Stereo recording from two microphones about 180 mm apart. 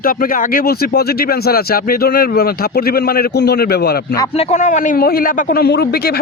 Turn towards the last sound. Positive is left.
turn(degrees=65)  # may be behind; listen again after turning